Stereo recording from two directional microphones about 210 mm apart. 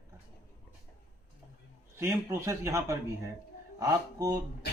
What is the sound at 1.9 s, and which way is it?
Speech, 15° right (ahead or behind).